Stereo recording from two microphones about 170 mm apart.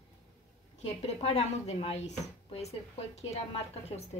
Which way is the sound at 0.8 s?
40° left (ahead or behind).